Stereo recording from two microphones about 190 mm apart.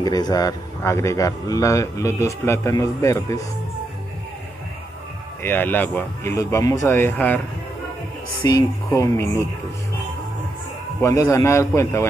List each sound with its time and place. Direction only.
0.0 s speech: 20° left (ahead or behind)
5.4 s speech: 10° left (ahead or behind)
8.5 s speech: 20° left (ahead or behind)
11.0 s speech: 15° left (ahead or behind)